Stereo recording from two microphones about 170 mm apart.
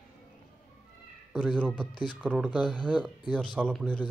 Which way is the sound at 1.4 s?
5° left (ahead or behind).